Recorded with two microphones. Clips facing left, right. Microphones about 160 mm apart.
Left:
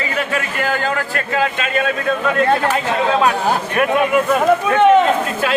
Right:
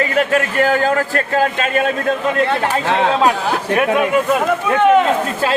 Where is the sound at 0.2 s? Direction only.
45° right (ahead or behind).